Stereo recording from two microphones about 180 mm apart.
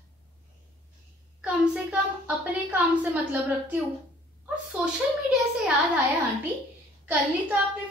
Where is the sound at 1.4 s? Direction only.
5° right (ahead or behind).